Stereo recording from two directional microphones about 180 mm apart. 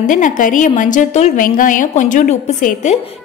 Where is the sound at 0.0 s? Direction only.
45° left (ahead or behind).